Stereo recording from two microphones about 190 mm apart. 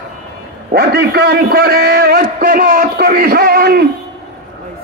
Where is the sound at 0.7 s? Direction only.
55° right (ahead or behind).